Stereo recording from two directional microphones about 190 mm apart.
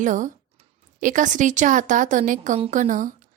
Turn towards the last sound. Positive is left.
turn(degrees=-40)  # may be behind; listen again after turning